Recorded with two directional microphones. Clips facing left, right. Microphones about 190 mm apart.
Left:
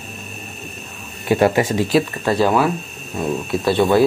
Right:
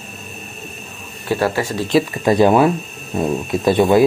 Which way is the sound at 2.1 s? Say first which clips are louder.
Right 4 dB; 15° right (ahead or behind).